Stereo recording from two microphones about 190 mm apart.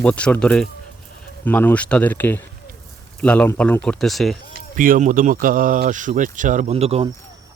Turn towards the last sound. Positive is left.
turn(degrees=-30)  # may be behind; listen again after turning